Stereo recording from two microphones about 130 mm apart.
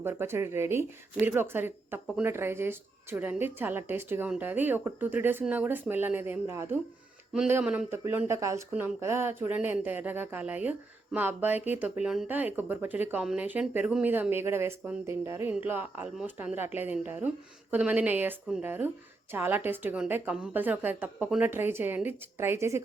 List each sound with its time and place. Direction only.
0.0 s speech: 20° right (ahead or behind)